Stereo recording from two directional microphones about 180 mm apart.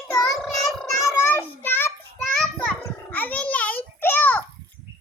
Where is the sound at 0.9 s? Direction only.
20° left (ahead or behind).